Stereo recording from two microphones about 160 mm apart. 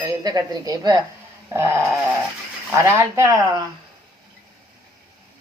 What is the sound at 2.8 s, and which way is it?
Speech, 15° right (ahead or behind).